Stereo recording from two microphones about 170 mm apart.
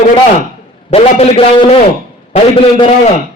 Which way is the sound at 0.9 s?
35° left (ahead or behind).